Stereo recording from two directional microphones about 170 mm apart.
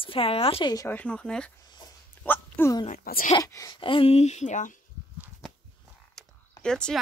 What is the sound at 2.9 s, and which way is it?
Speech, 55° left (ahead or behind).